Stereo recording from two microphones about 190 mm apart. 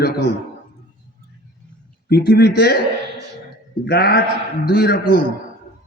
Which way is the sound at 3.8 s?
60° left (ahead or behind).